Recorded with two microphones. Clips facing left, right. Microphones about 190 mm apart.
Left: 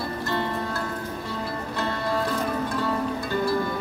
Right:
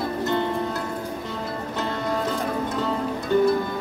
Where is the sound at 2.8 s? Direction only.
20° right (ahead or behind).